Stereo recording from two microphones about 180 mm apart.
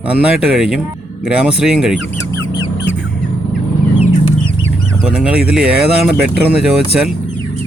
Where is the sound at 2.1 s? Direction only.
15° left (ahead or behind).